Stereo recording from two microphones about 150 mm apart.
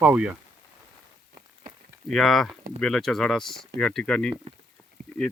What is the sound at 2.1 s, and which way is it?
Speech, centre (ahead or behind).